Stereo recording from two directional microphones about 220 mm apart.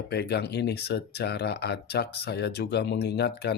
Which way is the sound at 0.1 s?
45° left (ahead or behind).